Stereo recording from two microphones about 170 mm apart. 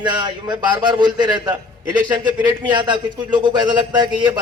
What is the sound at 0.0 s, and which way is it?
A man's voice, 25° right (ahead or behind).